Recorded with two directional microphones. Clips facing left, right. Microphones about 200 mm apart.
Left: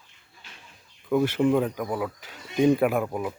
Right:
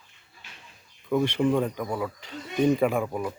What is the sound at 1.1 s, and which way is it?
Speech, 5° left (ahead or behind).